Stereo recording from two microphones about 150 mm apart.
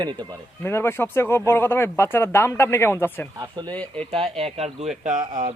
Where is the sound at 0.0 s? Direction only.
30° right (ahead or behind).